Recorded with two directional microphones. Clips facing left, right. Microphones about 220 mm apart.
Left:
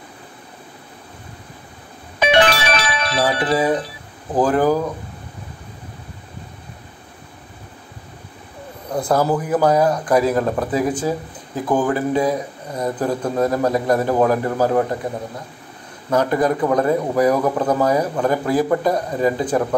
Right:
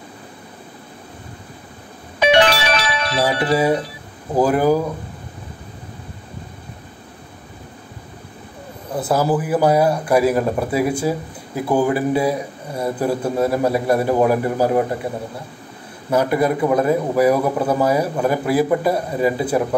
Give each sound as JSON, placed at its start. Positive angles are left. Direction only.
{"t": 2.4, "sound": "music", "side_deg": 50}
{"t": 3.3, "sound": "a man's voice", "side_deg": -10}
{"t": 8.9, "sound": "a man's voice", "side_deg": -5}
{"t": 16.1, "sound": "a man's voice", "side_deg": -10}